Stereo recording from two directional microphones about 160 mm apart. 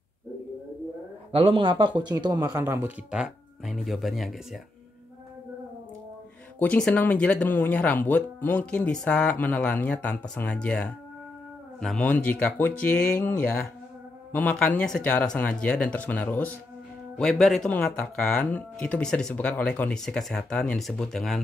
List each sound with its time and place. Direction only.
1.3 s speech: 35° right (ahead or behind)
2.6 s speech: 10° right (ahead or behind)
6.6 s speech: 5° left (ahead or behind)